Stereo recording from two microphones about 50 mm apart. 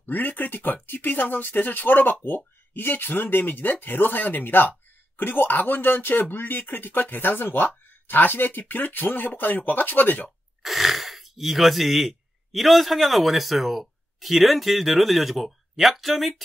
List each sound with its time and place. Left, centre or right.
0.0 s speech: left
10.6 s speech: centre